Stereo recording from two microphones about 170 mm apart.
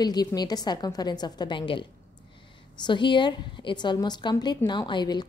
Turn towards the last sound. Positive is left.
turn(degrees=25)  # may be behind; listen again after turning